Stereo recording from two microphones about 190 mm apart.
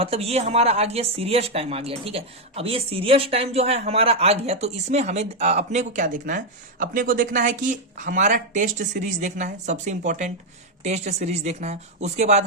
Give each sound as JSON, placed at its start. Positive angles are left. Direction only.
{"t": 0.0, "sound": "speech", "side_deg": -30}